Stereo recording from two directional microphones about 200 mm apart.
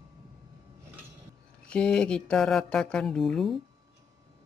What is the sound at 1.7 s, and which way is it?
Speech, 5° left (ahead or behind).